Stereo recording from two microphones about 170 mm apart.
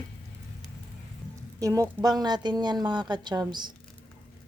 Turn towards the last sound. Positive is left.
turn(degrees=-25)  # may be behind; listen again after turning